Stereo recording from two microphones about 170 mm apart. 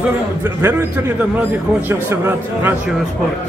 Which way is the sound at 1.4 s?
15° right (ahead or behind).